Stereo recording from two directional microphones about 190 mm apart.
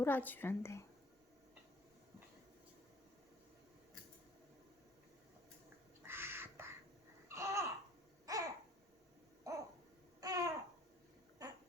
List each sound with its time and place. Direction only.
0.0 s speech: 10° left (ahead or behind)
6.0 s bird: 10° right (ahead or behind)
7.3 s babbling: 15° right (ahead or behind)
9.5 s owl: 15° right (ahead or behind)
10.2 s babbling: 20° right (ahead or behind)
11.4 s a sound: 20° right (ahead or behind)